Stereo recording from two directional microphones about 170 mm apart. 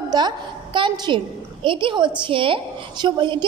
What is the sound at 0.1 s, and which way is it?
A woman's voice, 25° right (ahead or behind).